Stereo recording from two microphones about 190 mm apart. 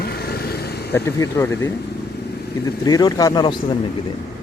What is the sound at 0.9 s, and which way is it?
Speech, 15° left (ahead or behind).